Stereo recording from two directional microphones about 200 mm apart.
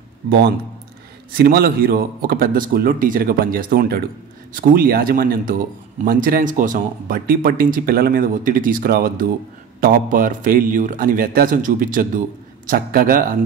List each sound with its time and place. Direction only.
1.3 s speech: 50° right (ahead or behind)